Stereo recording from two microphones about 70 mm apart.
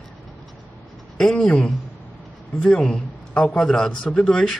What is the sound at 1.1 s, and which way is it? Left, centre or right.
Speech, centre.